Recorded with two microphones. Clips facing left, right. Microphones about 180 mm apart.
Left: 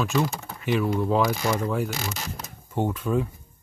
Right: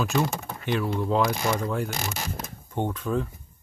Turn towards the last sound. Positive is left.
turn(degrees=5)  # may be behind; listen again after turning